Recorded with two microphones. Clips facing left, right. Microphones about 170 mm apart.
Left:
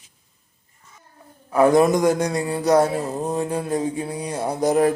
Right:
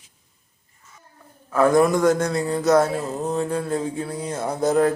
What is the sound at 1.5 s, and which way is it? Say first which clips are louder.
A man's voice: left 1 dB; 15° left (ahead or behind).